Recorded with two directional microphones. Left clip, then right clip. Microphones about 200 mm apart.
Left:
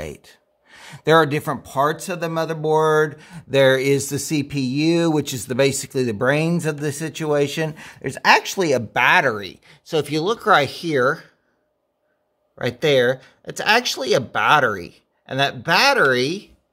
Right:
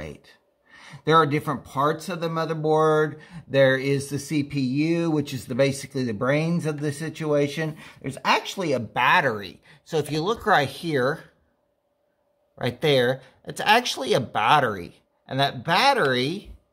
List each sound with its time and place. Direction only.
0.0 s speech: 45° left (ahead or behind); by 11.2 s 15° left (ahead or behind)
12.5 s speech: 15° left (ahead or behind)